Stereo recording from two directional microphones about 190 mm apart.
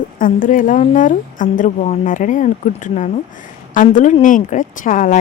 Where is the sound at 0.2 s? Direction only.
45° left (ahead or behind).